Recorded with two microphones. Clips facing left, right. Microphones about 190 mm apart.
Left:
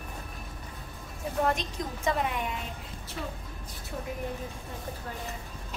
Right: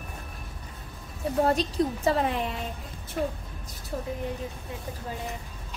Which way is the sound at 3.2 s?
50° right (ahead or behind).